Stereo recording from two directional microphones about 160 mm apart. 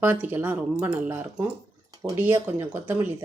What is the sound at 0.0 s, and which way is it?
Speech, 10° right (ahead or behind).